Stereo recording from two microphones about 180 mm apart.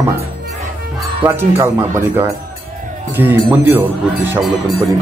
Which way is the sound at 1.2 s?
10° right (ahead or behind).